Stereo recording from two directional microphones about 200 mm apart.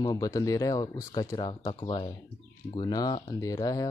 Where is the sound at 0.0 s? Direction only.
20° left (ahead or behind).